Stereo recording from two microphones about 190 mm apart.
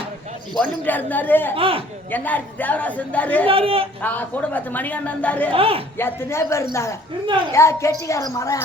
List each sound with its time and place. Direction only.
0.5 s a woman's voice: 10° left (ahead or behind)
1.5 s a man's voice: 30° right (ahead or behind)
2.0 s a woman's voice: 10° left (ahead or behind)
3.4 s a man's voice: 30° right (ahead or behind)
4.0 s a woman's voice: 10° left (ahead or behind)
5.5 s a man's voice: 30° right (ahead or behind)
6.0 s a woman's voice: 10° left (ahead or behind)